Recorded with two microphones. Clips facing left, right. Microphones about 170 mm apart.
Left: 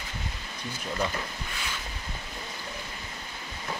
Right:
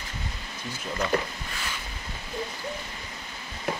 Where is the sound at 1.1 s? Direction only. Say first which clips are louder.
Right 9 dB; 65° right (ahead or behind).